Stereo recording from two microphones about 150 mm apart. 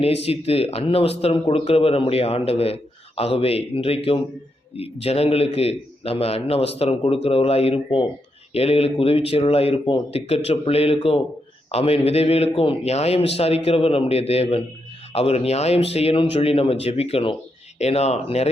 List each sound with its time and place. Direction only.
0.0 s a man's voice: 40° left (ahead or behind)